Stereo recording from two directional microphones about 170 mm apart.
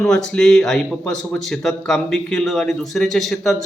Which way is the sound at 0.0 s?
5° left (ahead or behind).